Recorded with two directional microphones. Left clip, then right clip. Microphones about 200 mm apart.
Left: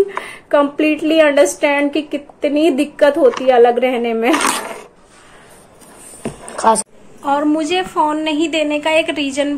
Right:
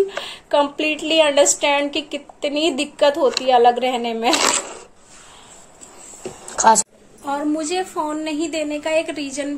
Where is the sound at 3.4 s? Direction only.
15° right (ahead or behind).